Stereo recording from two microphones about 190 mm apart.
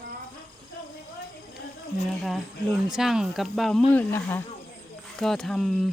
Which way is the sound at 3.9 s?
10° left (ahead or behind).